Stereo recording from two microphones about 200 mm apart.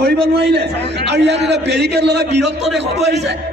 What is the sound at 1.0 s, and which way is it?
A man's voice, 60° right (ahead or behind).